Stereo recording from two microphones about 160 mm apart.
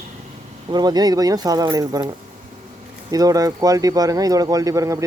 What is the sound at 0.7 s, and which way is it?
Speech, 25° right (ahead or behind).